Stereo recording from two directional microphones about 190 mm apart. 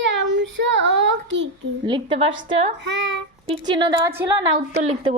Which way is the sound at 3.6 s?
25° right (ahead or behind).